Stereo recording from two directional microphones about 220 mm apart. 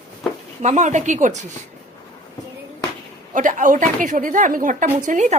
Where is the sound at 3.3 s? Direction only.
35° right (ahead or behind).